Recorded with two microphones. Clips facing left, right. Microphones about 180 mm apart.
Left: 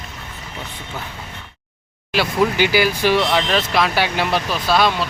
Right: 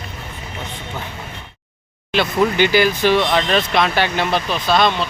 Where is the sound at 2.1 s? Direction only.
10° left (ahead or behind).